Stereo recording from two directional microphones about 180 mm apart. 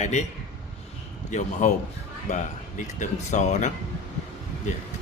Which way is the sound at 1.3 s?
40° left (ahead or behind).